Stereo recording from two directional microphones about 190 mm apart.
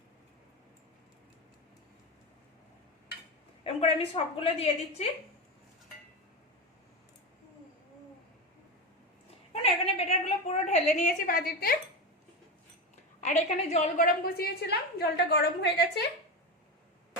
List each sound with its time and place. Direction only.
3.6 s a woman's voice: 30° left (ahead or behind)
9.5 s a sound: 35° left (ahead or behind); by 11.8 s 50° left (ahead or behind)
13.2 s a woman's voice: 35° left (ahead or behind); by 16.0 s 60° left (ahead or behind)